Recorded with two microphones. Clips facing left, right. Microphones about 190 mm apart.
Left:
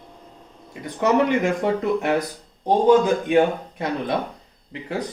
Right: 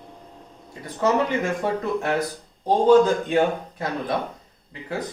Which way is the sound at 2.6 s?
15° left (ahead or behind).